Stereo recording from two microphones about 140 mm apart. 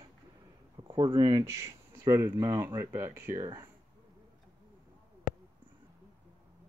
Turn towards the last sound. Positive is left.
turn(degrees=-5)  # may be behind; listen again after turning